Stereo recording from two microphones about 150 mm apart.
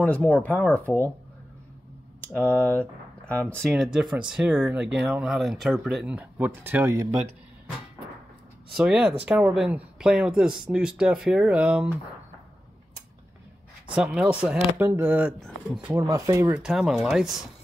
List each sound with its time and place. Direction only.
0.0 s speech: 10° left (ahead or behind)
2.2 s speech: 10° left (ahead or behind)
3.7 s speech: 5° right (ahead or behind)
8.7 s speech: 5° right (ahead or behind)
13.9 s speech: 5° right (ahead or behind)
16.6 s speech: 5° right (ahead or behind)